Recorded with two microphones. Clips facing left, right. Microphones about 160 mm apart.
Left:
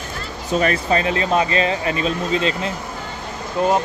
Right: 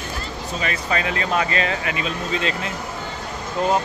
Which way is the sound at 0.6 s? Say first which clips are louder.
Left 5 dB; 40° left (ahead or behind).